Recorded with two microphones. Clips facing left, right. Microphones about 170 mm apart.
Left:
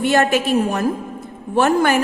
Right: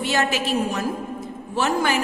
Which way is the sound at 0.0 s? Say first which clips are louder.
Left 6 dB; 55° left (ahead or behind).